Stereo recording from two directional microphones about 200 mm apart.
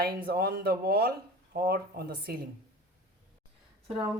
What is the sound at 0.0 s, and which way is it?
Speech, 45° right (ahead or behind).